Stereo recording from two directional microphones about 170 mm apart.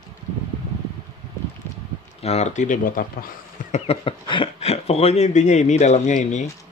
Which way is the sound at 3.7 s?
35° left (ahead or behind).